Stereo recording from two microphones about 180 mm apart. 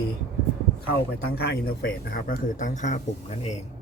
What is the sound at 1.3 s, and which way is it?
Speech, 65° left (ahead or behind).